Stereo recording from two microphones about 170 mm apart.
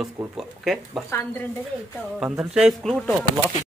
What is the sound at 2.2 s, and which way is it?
Speech, 5° right (ahead or behind).